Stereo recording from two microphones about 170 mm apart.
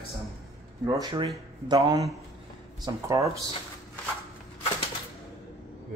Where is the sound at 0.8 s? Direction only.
25° right (ahead or behind).